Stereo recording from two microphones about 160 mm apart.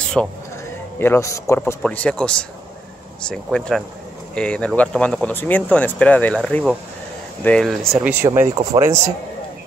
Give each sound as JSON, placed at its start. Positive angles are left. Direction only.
{"t": 0.2, "sound": "speech", "side_deg": -5}
{"t": 0.9, "sound": "speech", "side_deg": 15}
{"t": 1.8, "sound": "speech", "side_deg": 5}
{"t": 8.0, "sound": "speech", "side_deg": -15}